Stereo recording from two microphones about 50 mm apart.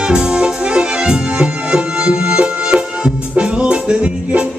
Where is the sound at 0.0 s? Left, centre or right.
Centre.